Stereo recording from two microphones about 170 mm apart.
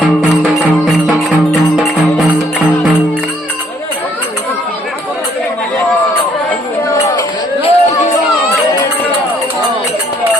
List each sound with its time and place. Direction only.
7.2 s music: 35° left (ahead or behind)